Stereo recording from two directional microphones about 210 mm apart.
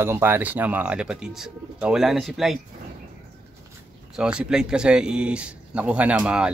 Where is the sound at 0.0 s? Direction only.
10° right (ahead or behind).